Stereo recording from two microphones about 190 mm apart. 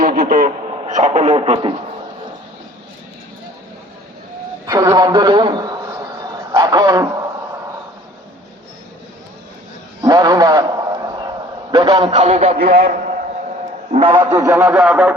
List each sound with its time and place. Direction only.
0.0 s a man's voice: 50° right (ahead or behind); by 1.7 s 30° right (ahead or behind)
4.6 s a man's voice: 15° right (ahead or behind)
10.0 s a sound: 20° right (ahead or behind)
11.9 s speech: 30° right (ahead or behind)
12.7 s a man's voice: 50° right (ahead or behind)
13.9 s a man's voice: 25° right (ahead or behind); by 15.1 s 5° right (ahead or behind)